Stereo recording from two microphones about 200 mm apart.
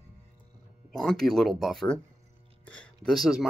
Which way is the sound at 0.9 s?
5° left (ahead or behind).